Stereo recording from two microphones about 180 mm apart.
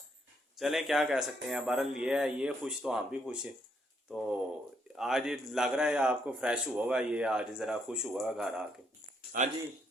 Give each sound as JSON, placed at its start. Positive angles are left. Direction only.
{"t": 0.5, "sound": "a man's voice", "side_deg": 0}
{"t": 4.9, "sound": "a man's voice", "side_deg": 0}
{"t": 9.3, "sound": "speech", "side_deg": -50}